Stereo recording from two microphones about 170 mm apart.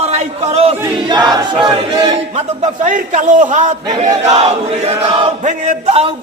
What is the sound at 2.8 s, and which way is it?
A man's voice, 45° right (ahead or behind).